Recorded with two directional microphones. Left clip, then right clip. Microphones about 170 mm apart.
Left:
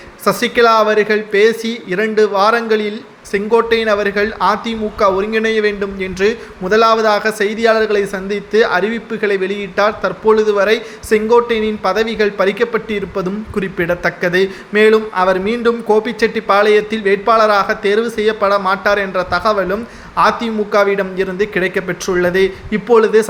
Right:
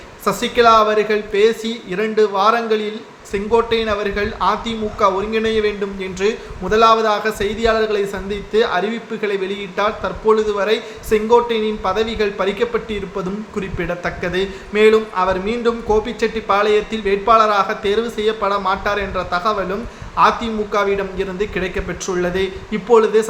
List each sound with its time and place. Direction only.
0.3 s speech: 25° left (ahead or behind)